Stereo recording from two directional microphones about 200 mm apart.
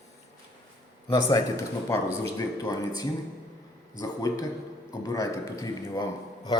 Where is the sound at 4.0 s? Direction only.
15° left (ahead or behind).